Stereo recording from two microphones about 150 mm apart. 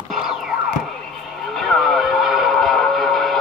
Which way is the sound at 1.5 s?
Centre (ahead or behind).